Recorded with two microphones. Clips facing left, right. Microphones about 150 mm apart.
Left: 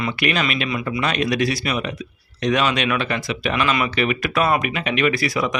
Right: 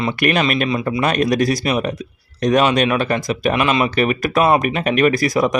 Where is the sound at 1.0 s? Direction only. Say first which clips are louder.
Right 4 dB; 45° right (ahead or behind).